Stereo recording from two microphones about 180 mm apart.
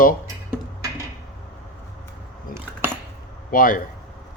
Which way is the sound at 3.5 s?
50° left (ahead or behind).